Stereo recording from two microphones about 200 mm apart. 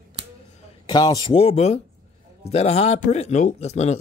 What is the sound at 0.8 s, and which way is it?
Speech, 20° left (ahead or behind).